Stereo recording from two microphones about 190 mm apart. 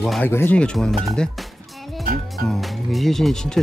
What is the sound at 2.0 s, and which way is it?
Music, 50° right (ahead or behind).